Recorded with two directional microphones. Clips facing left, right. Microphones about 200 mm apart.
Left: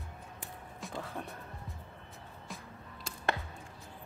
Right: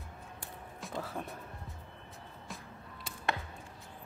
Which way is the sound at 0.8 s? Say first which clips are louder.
Right 1 dB; centre (ahead or behind).